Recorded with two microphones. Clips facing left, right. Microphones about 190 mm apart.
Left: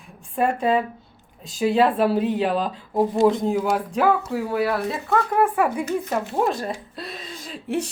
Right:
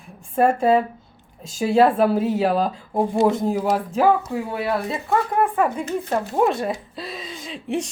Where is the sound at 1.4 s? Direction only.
Centre (ahead or behind).